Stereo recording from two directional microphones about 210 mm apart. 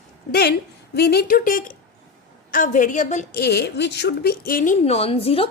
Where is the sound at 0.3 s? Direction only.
50° left (ahead or behind).